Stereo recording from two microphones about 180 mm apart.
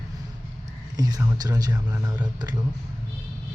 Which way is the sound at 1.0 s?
20° right (ahead or behind).